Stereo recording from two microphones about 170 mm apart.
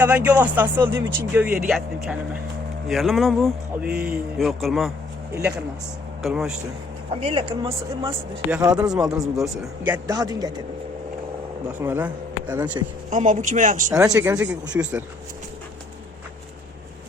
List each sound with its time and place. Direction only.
0.0 s a man's voice: 10° right (ahead or behind)
7.1 s speech: 35° right (ahead or behind)
8.4 s a man's voice: 10° right (ahead or behind)
10.1 s a man's voice: 20° right (ahead or behind)
11.8 s speech: 10° right (ahead or behind)
13.1 s speech: 45° right (ahead or behind)
14.0 s speech: 15° right (ahead or behind)